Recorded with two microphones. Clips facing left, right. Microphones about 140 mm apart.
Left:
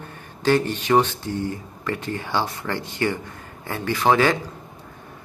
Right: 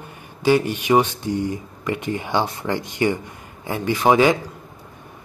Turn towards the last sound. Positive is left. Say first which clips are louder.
# right 3 dB
turn(degrees=-15)  # may be behind; listen again after turning